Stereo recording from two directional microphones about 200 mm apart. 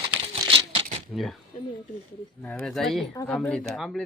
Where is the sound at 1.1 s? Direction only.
Centre (ahead or behind).